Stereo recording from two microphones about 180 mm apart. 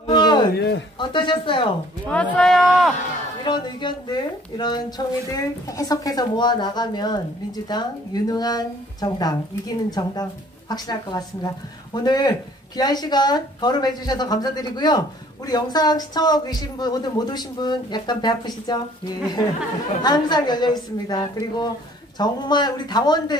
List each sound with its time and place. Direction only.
0.0 s a sound: 25° left (ahead or behind)
0.6 s a man's voice: 75° left (ahead or behind)
0.9 s a woman's voice: 25° left (ahead or behind)
2.0 s speech: 5° left (ahead or behind)
3.4 s a woman's voice: 25° left (ahead or behind)